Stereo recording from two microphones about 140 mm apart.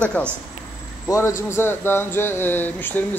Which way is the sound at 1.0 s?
20° left (ahead or behind).